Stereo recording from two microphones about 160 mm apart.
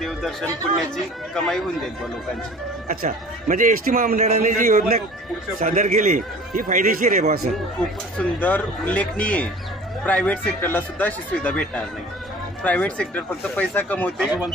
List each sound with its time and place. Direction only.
0.0 s speech: centre (ahead or behind)
3.0 s a man's voice: 60° right (ahead or behind)
4.2 s a man's voice: 50° right (ahead or behind)
8.2 s speech: 10° left (ahead or behind)